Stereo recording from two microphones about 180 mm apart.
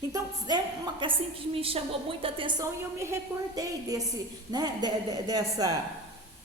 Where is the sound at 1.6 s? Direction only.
30° right (ahead or behind).